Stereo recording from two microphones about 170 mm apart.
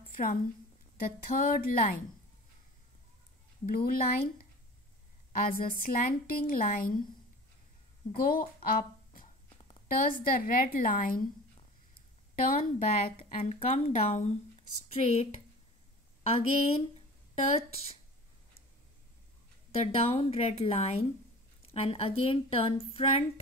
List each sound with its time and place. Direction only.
0.1 s a sound: 55° left (ahead or behind)
1.0 s a woman's voice: 60° left (ahead or behind)
3.6 s a woman's voice: 55° left (ahead or behind)
5.3 s a woman's voice: 60° left (ahead or behind)
8.2 s a woman's voice: 60° left (ahead or behind)
12.4 s a woman's voice: 50° left (ahead or behind)
13.2 s a woman's voice: 40° left (ahead or behind)
19.8 s a woman's voice: 35° left (ahead or behind)